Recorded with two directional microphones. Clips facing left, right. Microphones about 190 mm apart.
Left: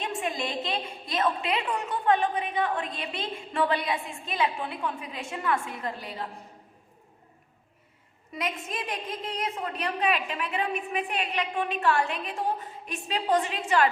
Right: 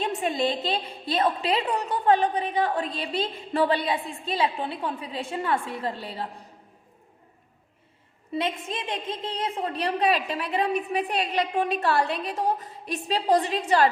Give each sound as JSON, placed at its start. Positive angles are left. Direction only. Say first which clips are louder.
{"t": 0.0, "sound": "a woman's voice", "louder": "right 5 dB", "side_deg": -30}
{"t": 8.3, "sound": "a woman's voice", "louder": "right 5 dB", "side_deg": -30}